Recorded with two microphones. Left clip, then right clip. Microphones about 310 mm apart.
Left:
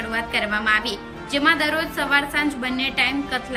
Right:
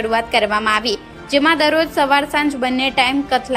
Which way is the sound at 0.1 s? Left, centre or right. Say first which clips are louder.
Right 6 dB; centre.